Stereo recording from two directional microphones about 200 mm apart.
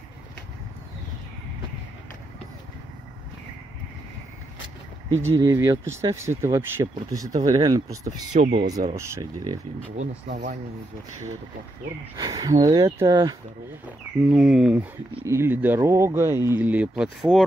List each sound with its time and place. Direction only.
5.3 s speech: 15° right (ahead or behind)
8.3 s speech: 35° right (ahead or behind)
8.5 s speech: 20° right (ahead or behind)
10.2 s speech: 45° right (ahead or behind)
12.2 s speech: 20° right (ahead or behind)
14.3 s speech: 5° right (ahead or behind)